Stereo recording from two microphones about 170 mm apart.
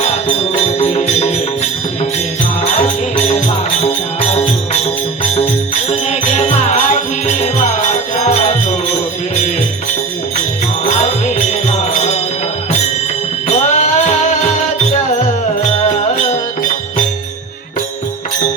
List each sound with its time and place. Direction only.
0.0 s music: 40° left (ahead or behind)
2.6 s music: 40° left (ahead or behind)
10.8 s music: 40° left (ahead or behind)
13.5 s music: 40° left (ahead or behind)